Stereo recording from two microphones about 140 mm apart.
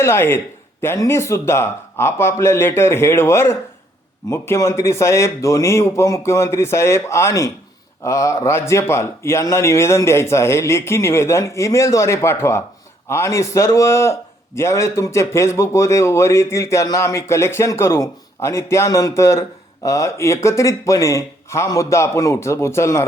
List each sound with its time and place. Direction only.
0.0 s a man's voice: 15° left (ahead or behind)